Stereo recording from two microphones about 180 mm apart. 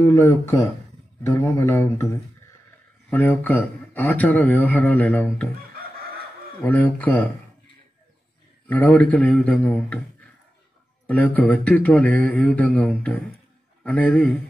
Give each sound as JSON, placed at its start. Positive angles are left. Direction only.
{"t": 0.1, "sound": "a man's voice", "side_deg": 15}
{"t": 3.1, "sound": "a man's voice", "side_deg": 10}
{"t": 5.8, "sound": "chicken", "side_deg": -55}
{"t": 6.6, "sound": "a man's voice", "side_deg": 10}
{"t": 8.6, "sound": "a man's voice", "side_deg": 10}
{"t": 11.1, "sound": "a man's voice", "side_deg": 10}